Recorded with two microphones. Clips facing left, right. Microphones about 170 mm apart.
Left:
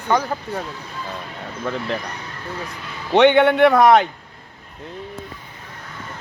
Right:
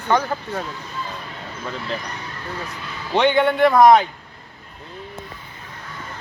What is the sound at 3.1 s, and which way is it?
Speech, 65° left (ahead or behind).